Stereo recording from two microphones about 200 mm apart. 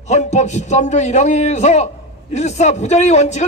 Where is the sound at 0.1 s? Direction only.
35° left (ahead or behind).